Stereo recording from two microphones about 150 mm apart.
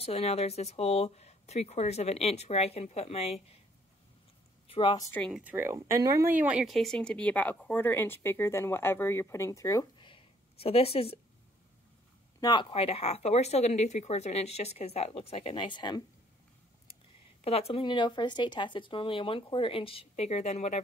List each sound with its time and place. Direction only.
0.0 s speech: 40° left (ahead or behind)
4.6 s a woman's voice: 35° left (ahead or behind)
5.3 s speech: 10° right (ahead or behind); by 11.1 s 40° left (ahead or behind)
12.4 s speech: 25° left (ahead or behind)
12.7 s speech: 40° left (ahead or behind)
17.4 s speech: 40° left (ahead or behind)